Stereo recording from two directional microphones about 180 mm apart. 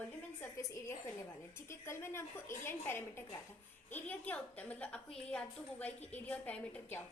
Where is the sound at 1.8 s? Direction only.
15° left (ahead or behind).